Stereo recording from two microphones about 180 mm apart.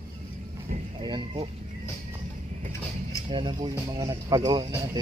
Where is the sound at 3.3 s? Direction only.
25° right (ahead or behind).